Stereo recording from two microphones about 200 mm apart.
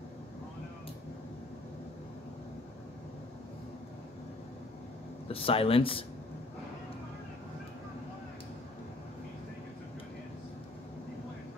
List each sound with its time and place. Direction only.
5.3 s speech: 30° left (ahead or behind)